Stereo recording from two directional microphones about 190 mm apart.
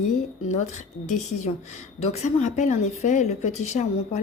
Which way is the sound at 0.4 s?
40° left (ahead or behind).